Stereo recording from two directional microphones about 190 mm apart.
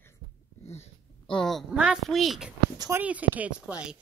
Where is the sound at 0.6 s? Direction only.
35° left (ahead or behind).